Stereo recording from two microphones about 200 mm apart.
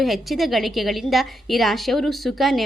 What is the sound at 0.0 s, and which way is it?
A woman's voice, centre (ahead or behind).